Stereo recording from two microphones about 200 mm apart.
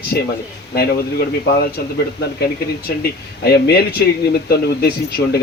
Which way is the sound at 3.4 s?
55° left (ahead or behind).